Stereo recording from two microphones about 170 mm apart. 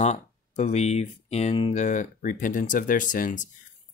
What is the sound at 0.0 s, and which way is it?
Speech, 40° left (ahead or behind).